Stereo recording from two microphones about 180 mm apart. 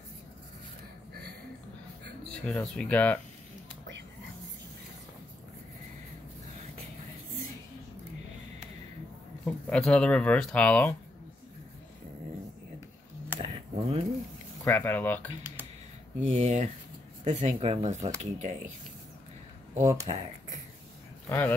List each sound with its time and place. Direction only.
2.4 s speech: 5° left (ahead or behind)
9.4 s speech: 5° left (ahead or behind)
13.4 s a sound: 30° right (ahead or behind)
14.6 s speech: 15° left (ahead or behind)
16.3 s speech: 40° right (ahead or behind)
19.8 s speech: 15° right (ahead or behind)
20.2 s speech: 45° right (ahead or behind)
21.3 s speech: 10° left (ahead or behind)